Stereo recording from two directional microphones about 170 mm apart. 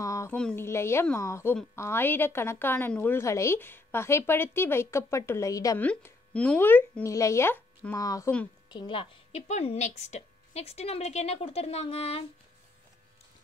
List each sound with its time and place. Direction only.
0.0 s a sound: 20° left (ahead or behind)
0.4 s a woman's voice: 10° left (ahead or behind)
5.8 s a woman's voice: 10° left (ahead or behind); by 12.3 s 35° left (ahead or behind)